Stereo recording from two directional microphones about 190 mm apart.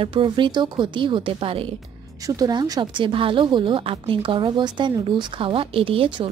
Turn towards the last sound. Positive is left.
turn(degrees=-30)  # may be behind; listen again after turning